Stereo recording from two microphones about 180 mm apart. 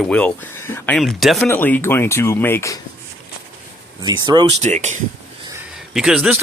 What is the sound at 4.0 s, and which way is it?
Speech, 25° right (ahead or behind).